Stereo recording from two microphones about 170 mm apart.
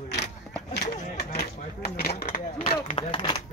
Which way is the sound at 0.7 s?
70° left (ahead or behind).